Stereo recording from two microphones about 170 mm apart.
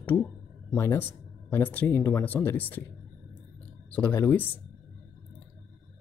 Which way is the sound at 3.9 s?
10° left (ahead or behind).